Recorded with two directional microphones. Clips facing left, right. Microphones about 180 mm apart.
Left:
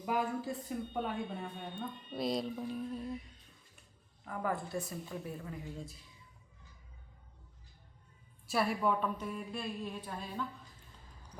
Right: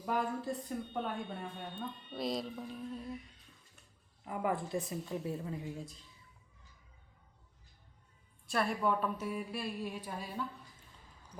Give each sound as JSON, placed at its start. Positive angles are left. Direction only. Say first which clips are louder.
{"t": 0.0, "sound": "speech", "louder": "left 1 dB", "side_deg": 5}
{"t": 4.3, "sound": "a woman's voice", "louder": "right 2 dB", "side_deg": -15}
{"t": 5.7, "sound": "speech", "louder": "right 1 dB", "side_deg": 5}
{"t": 8.4, "sound": "a woman's voice", "louder": "left 1 dB", "side_deg": 5}